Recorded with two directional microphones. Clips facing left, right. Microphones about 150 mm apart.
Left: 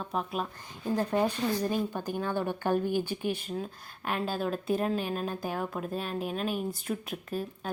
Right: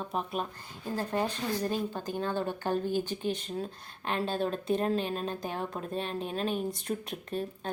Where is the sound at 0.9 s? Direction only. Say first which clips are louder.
Left 3 dB; 15° left (ahead or behind).